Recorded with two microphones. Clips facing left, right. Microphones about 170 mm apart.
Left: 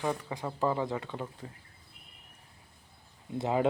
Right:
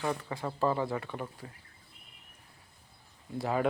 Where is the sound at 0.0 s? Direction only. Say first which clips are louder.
Even; 15° left (ahead or behind).